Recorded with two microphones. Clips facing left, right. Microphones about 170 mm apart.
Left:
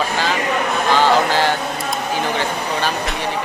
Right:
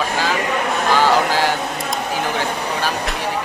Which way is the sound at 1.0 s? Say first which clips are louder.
Left 2 dB; 10° right (ahead or behind).